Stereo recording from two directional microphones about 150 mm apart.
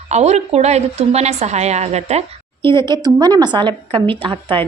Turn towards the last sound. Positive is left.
turn(degrees=-35)  # may be behind; listen again after turning